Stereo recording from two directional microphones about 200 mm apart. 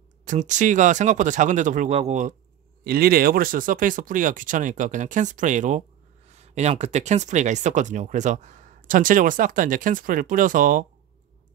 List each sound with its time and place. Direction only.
0.2 s speech: 40° right (ahead or behind)
2.8 s speech: 50° right (ahead or behind)